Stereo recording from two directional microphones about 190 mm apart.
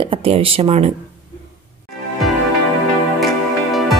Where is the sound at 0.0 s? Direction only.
30° right (ahead or behind).